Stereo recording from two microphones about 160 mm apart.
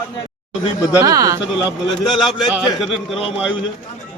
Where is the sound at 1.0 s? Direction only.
25° right (ahead or behind).